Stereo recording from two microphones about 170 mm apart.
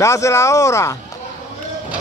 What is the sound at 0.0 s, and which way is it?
Speech, 15° left (ahead or behind).